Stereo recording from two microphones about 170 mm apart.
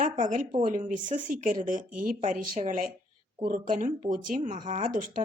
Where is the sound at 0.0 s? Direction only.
50° right (ahead or behind).